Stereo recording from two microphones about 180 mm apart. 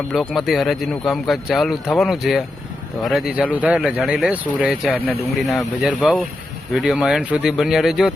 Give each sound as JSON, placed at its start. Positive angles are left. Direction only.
{"t": 0.1, "sound": "speech", "side_deg": 0}